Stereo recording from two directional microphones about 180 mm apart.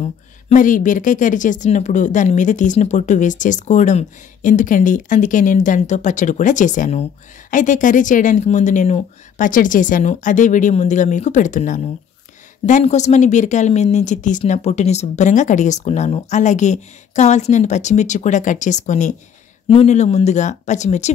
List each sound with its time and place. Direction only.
0.0 s a woman's voice: 40° left (ahead or behind)